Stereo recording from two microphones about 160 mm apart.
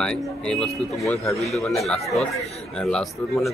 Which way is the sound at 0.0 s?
5° left (ahead or behind).